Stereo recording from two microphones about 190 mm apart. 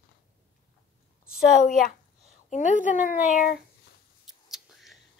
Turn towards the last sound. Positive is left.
turn(degrees=0)  # may be behind; listen again after turning